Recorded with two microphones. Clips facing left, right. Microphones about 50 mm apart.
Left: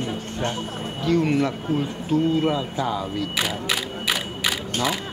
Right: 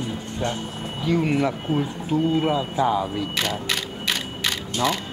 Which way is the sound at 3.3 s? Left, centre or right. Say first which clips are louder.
Left 2 dB; centre.